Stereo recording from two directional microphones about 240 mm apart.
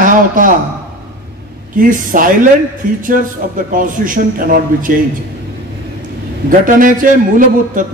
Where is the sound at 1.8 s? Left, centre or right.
Right.